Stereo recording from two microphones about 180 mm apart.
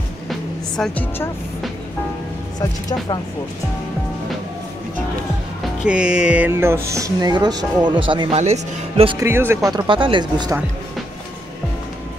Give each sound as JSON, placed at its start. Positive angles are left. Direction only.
{"t": 0.3, "sound": "music", "side_deg": 5}
{"t": 5.9, "sound": "music", "side_deg": -5}
{"t": 8.1, "sound": "speech", "side_deg": -30}
{"t": 9.2, "sound": "speech", "side_deg": -15}